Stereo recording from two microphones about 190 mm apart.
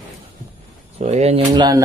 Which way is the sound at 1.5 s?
20° right (ahead or behind).